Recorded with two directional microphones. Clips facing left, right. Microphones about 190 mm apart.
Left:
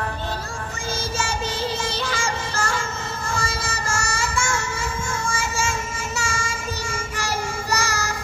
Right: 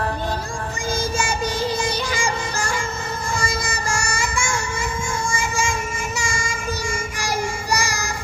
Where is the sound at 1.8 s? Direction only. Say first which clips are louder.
Right 3 dB; 15° right (ahead or behind).